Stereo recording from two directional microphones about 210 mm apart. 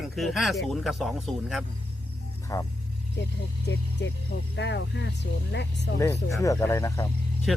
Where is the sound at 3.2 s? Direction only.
55° left (ahead or behind).